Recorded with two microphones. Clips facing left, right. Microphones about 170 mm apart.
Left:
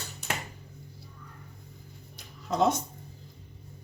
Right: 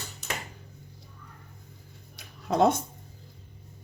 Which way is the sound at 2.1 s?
60° right (ahead or behind).